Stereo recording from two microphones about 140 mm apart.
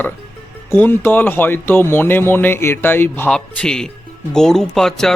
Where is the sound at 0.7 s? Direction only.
15° left (ahead or behind).